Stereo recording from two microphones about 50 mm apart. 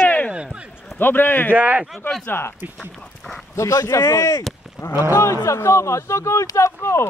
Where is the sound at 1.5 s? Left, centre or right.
Right.